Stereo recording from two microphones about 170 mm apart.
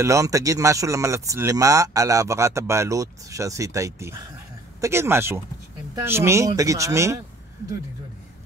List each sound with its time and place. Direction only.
0.0 s speech: 20° right (ahead or behind)